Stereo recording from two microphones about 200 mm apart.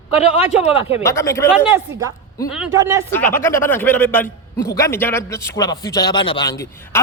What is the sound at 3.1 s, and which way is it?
A man's voice, 10° left (ahead or behind).